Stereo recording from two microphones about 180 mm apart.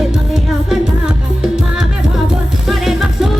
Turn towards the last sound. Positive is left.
turn(degrees=0)  # may be behind; listen again after turning